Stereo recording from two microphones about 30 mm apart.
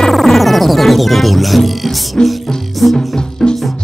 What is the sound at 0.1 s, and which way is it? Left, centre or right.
Music, centre.